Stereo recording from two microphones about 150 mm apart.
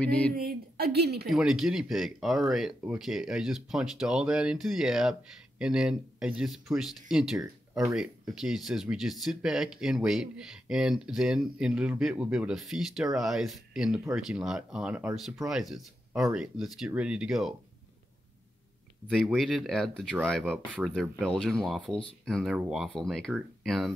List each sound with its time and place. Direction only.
0.0 s speech: 10° left (ahead or behind)
0.4 s a woman's voice: 85° right
1.3 s speech: 5° right (ahead or behind)
19.2 s speech: centre (ahead or behind)
20.5 s speech: 10° right (ahead or behind)
21.3 s speech: centre (ahead or behind)